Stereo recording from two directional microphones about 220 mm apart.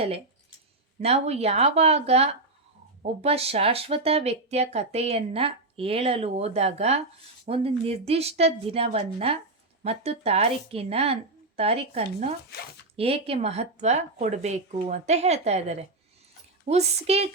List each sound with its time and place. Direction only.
1.0 s speech: 30° right (ahead or behind)